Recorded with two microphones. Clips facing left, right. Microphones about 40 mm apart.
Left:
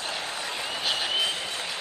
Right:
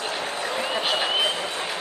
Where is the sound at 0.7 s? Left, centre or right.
Right.